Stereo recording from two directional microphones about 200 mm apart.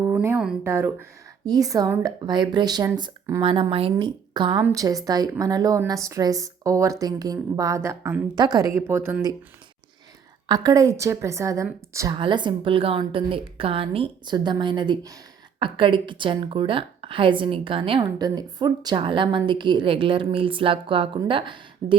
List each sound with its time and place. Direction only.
0.0 s a woman's voice: 10° right (ahead or behind)
10.5 s a woman's voice: 20° right (ahead or behind)